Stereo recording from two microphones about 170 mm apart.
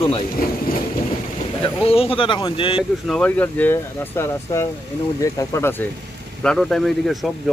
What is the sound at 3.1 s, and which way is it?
Speech, 5° left (ahead or behind).